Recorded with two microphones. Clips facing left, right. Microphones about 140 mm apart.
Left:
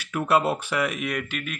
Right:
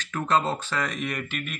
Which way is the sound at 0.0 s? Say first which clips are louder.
Left 2 dB; 10° left (ahead or behind).